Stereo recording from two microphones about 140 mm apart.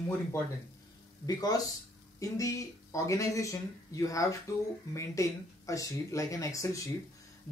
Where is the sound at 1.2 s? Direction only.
25° left (ahead or behind).